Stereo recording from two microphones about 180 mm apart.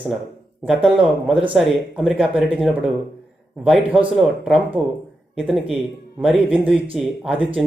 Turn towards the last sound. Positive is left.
turn(degrees=-10)  # may be behind; listen again after turning